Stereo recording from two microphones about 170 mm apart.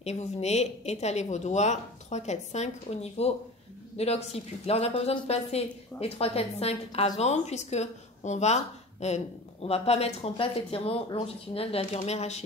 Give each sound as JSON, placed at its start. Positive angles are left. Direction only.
{"t": 0.0, "sound": "speech", "side_deg": 40}